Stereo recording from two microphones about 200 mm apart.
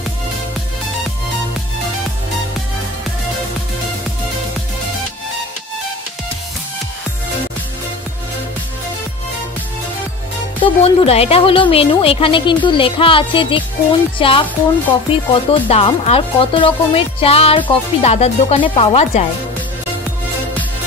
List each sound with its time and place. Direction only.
10.6 s speech: 30° left (ahead or behind)